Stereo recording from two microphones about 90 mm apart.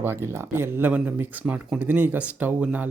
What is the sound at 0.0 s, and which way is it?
Speech, 30° right (ahead or behind).